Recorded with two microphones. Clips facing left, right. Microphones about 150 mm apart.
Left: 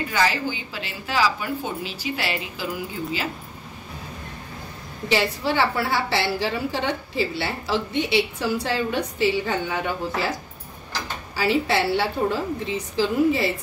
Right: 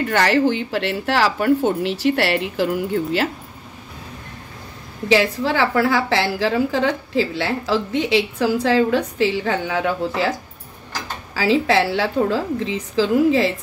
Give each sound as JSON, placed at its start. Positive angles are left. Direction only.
{"t": 0.1, "sound": "speech", "side_deg": -70}
{"t": 5.0, "sound": "a woman's voice", "side_deg": -90}
{"t": 11.3, "sound": "a woman's voice", "side_deg": -90}